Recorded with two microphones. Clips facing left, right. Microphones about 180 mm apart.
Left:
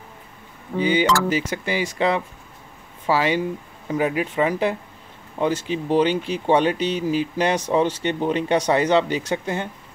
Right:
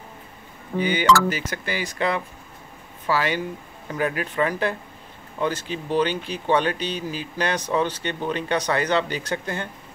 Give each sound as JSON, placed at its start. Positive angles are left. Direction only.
{"t": 0.7, "sound": "speech", "side_deg": 25}